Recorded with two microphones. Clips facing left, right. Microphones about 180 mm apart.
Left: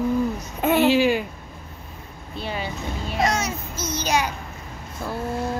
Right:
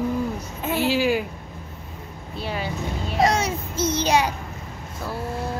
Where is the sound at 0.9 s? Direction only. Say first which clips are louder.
Left 2 dB; 5° right (ahead or behind).